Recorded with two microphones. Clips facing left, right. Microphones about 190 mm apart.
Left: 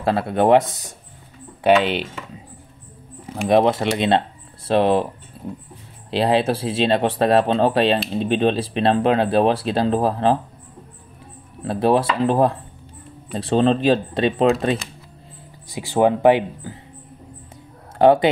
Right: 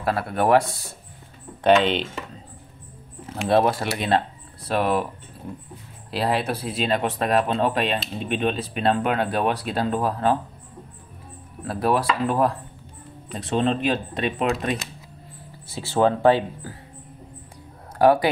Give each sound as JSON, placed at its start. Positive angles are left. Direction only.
{"t": 0.0, "sound": "speech", "side_deg": 25}
{"t": 1.6, "sound": "speech", "side_deg": 10}
{"t": 3.3, "sound": "speech", "side_deg": 15}
{"t": 6.0, "sound": "speech", "side_deg": 25}
{"t": 11.6, "sound": "speech", "side_deg": 25}
{"t": 15.7, "sound": "speech", "side_deg": 15}
{"t": 17.9, "sound": "speech", "side_deg": 25}